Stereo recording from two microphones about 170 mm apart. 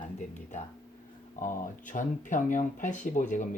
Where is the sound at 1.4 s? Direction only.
55° left (ahead or behind).